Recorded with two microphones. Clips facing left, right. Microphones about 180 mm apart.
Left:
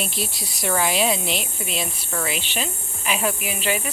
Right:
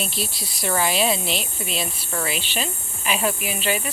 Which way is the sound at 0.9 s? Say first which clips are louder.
Even; 15° left (ahead or behind).